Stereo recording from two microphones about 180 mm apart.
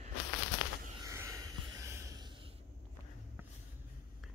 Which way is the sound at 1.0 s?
15° right (ahead or behind).